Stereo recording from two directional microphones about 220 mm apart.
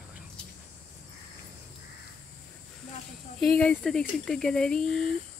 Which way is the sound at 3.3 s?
5° left (ahead or behind).